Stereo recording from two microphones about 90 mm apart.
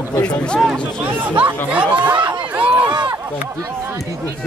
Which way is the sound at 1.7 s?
15° right (ahead or behind).